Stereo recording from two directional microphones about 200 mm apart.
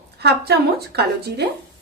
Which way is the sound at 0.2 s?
55° right (ahead or behind).